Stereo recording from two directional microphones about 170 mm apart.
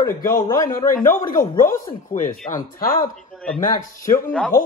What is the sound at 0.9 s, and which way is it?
A man's voice, 50° left (ahead or behind).